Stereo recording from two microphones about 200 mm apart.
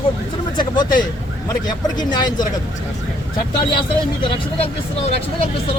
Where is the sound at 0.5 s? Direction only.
20° left (ahead or behind).